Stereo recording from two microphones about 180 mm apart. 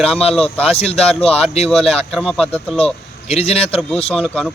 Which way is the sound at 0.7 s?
35° left (ahead or behind).